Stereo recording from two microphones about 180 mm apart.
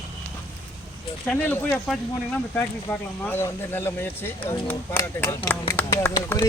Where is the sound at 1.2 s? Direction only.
10° left (ahead or behind).